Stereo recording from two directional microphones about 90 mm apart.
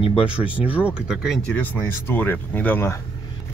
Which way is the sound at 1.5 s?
20° left (ahead or behind).